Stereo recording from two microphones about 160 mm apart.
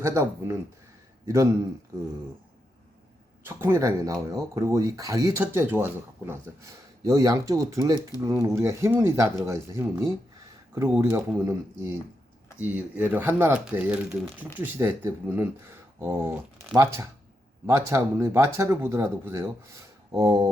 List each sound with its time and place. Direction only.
0.0 s a man's voice: 15° right (ahead or behind)
3.4 s speech: 15° right (ahead or behind)